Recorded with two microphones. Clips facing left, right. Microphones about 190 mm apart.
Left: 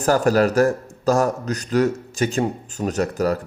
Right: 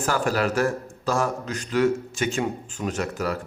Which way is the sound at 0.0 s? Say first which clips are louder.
Left 7 dB; 40° left (ahead or behind).